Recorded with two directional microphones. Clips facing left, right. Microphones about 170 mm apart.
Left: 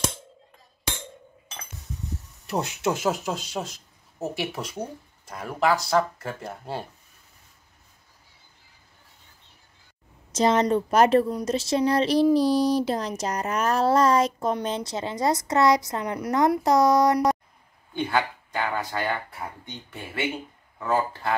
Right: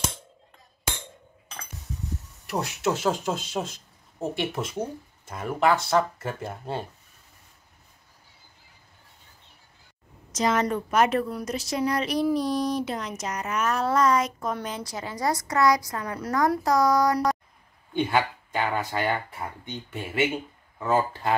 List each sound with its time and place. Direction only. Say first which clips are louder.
2.4 s speech: left 1 dB; 20° left (ahead or behind)
3.3 s speech: right 1 dB; centre (ahead or behind)
10.3 s a woman's voice: left 4 dB; 30° left (ahead or behind)
11.2 s child singing: left 5 dB; 25° left (ahead or behind)
14.5 s a woman's voice: left 5 dB; 25° left (ahead or behind)
17.9 s speech: right 1 dB; 15° right (ahead or behind)
20.9 s speech: right 1 dB; 20° right (ahead or behind)